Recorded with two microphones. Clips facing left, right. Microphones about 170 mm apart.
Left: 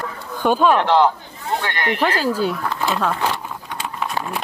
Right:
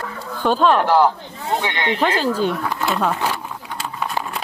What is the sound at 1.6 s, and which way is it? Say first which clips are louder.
Speech: right 1 dB; 20° right (ahead or behind).